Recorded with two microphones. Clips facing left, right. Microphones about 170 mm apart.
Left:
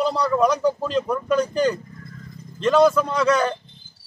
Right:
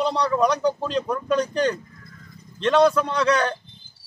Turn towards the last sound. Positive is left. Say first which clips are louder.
# left 1 dB
turn(degrees=5)  # may be behind; listen again after turning